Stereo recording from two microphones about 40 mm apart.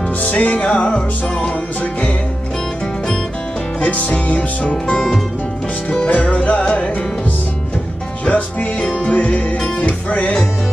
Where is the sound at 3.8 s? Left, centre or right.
Left.